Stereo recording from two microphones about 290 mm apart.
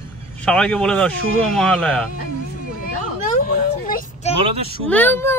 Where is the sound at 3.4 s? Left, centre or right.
Left.